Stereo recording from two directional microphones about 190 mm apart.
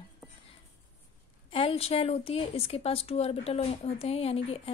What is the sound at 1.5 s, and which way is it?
A woman's voice, 30° left (ahead or behind).